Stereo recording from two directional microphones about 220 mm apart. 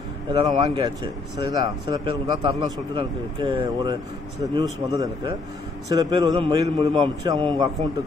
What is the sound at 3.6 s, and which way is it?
Speech, 20° right (ahead or behind).